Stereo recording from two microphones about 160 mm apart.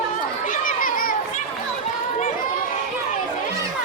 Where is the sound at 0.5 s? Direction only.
55° left (ahead or behind).